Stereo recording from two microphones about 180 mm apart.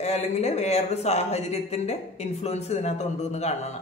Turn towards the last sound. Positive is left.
turn(degrees=35)  # may be behind; listen again after turning